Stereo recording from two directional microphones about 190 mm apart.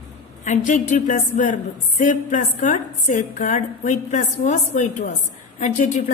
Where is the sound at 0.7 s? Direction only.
40° left (ahead or behind).